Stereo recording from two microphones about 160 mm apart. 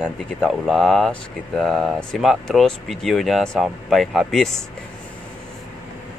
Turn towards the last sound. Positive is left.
turn(degrees=0)  # may be behind; listen again after turning